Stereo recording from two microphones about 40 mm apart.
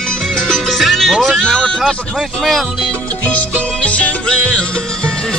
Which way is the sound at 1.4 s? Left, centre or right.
Centre.